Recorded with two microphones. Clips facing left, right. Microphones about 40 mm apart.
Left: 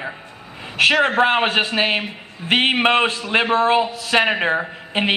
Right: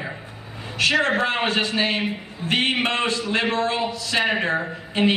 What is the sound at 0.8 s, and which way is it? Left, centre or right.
A man's voice, left.